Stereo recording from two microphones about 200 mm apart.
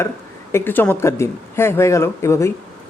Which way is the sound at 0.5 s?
10° left (ahead or behind).